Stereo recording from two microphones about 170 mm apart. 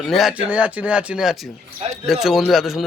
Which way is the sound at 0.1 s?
Centre (ahead or behind).